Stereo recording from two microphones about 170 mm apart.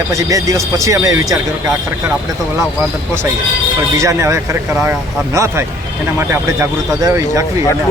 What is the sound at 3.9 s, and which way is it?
Speech, 15° right (ahead or behind).